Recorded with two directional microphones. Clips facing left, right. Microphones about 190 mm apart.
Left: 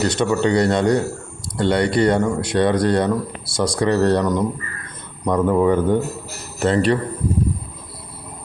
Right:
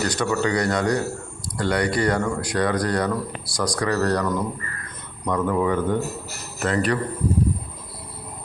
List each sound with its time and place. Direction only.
0.0 s speech: 25° left (ahead or behind)
5.2 s speech: 30° left (ahead or behind)